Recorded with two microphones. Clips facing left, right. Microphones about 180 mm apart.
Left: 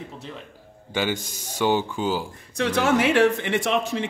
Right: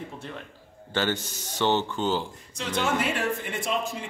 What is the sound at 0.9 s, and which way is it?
Speech, 10° left (ahead or behind).